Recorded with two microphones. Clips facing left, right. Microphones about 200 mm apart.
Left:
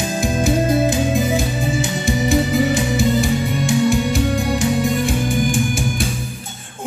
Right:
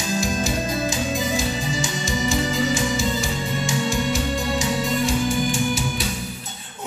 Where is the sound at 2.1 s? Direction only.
60° left (ahead or behind).